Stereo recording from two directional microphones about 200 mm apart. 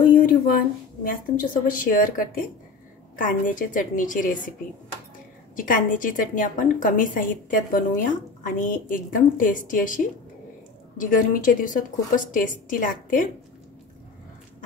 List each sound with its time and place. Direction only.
1.0 s a woman's voice: 45° left (ahead or behind)
5.6 s a woman's voice: 40° left (ahead or behind)